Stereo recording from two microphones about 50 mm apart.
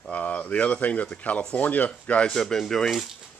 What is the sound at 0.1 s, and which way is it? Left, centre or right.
Speech, left.